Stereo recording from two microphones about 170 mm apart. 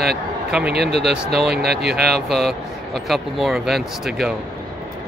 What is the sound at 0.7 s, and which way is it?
Speech, 75° right (ahead or behind).